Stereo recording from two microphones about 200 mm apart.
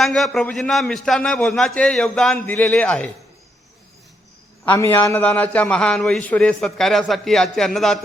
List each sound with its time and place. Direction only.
0.0 s a man's voice: centre (ahead or behind)
4.6 s a man's voice: 10° left (ahead or behind)